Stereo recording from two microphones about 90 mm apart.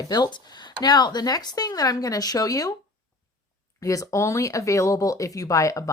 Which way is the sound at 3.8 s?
40° left (ahead or behind).